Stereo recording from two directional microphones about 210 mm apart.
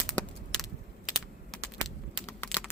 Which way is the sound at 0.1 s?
Centre (ahead or behind).